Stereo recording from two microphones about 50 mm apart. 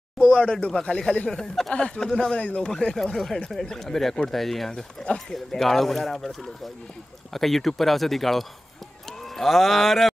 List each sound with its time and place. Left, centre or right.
0.2 s speech: left
2.3 s speech: left
2.7 s speech: centre
9.2 s mantra: centre